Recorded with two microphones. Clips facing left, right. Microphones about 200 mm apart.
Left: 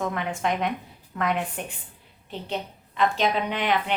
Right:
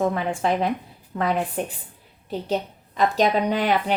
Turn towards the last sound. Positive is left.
turn(degrees=-40)  # may be behind; listen again after turning